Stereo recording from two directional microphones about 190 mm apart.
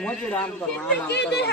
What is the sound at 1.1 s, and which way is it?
Speech, 60° left (ahead or behind).